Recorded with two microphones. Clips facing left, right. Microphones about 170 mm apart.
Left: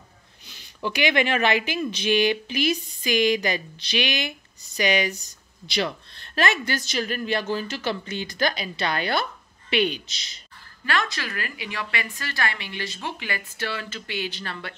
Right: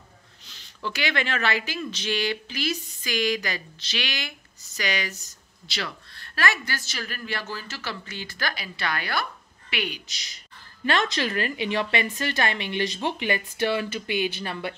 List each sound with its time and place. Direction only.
0.5 s a woman's voice: 15° left (ahead or behind)
10.9 s a woman's voice: 20° right (ahead or behind)